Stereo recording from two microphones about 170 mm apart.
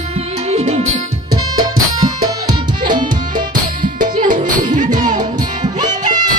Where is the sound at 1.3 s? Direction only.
25° right (ahead or behind).